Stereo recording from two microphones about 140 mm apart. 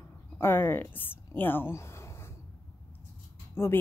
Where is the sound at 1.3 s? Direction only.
15° left (ahead or behind).